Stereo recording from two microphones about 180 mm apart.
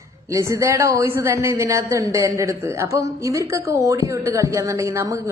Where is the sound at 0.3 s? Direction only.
15° right (ahead or behind).